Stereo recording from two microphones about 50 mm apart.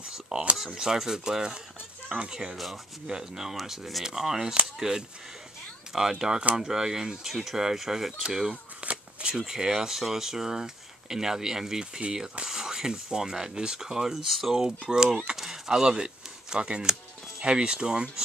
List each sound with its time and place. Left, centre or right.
0.0 s speech: centre
2.5 s speech: centre
8.8 s speech: centre
15.3 s a sound: centre
17.4 s speech: centre